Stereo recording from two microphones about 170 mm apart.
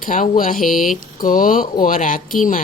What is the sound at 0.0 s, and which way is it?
Speech, 50° left (ahead or behind).